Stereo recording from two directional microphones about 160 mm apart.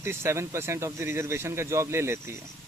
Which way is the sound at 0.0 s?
15° right (ahead or behind).